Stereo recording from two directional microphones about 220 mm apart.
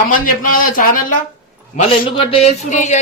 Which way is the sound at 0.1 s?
40° left (ahead or behind).